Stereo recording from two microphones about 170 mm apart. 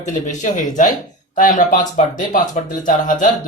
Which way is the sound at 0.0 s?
45° left (ahead or behind).